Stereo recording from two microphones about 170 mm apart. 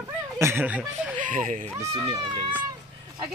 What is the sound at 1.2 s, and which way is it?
Speech, 50° right (ahead or behind).